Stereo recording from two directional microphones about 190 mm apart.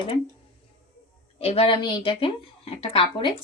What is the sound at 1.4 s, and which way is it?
A woman's voice, 30° left (ahead or behind).